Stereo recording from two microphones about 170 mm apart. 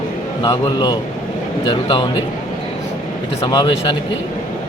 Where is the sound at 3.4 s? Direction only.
25° left (ahead or behind).